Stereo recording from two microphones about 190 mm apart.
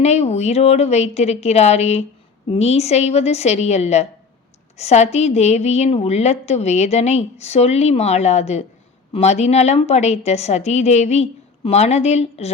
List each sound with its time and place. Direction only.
0.0 s a woman's voice: 35° left (ahead or behind)